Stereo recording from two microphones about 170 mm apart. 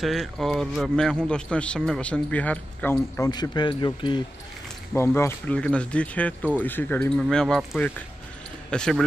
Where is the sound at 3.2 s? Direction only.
25° left (ahead or behind).